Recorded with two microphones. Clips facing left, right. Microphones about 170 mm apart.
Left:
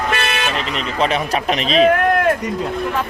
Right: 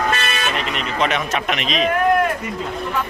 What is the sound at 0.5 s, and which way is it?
Speech, 35° left (ahead or behind).